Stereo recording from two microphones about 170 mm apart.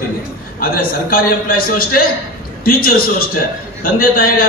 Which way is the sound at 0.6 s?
60° left (ahead or behind).